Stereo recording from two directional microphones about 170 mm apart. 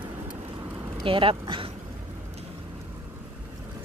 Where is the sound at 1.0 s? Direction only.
30° right (ahead or behind).